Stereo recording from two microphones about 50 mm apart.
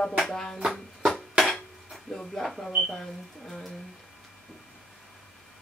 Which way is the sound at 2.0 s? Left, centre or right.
Centre.